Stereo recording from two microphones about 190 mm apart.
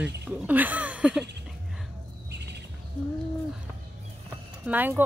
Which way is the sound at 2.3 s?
65° right (ahead or behind).